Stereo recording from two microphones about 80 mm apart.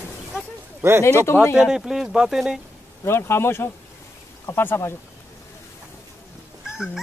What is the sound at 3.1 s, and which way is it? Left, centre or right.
Speech, left.